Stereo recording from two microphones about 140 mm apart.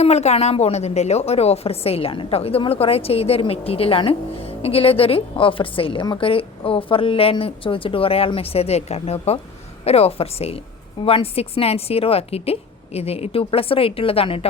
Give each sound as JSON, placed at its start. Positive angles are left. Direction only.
{"t": 0.0, "sound": "a woman's voice", "side_deg": 50}